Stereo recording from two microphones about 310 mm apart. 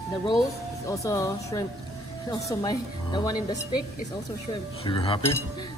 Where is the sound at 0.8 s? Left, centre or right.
Centre.